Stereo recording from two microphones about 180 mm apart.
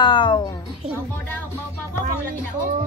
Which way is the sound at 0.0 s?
25° left (ahead or behind).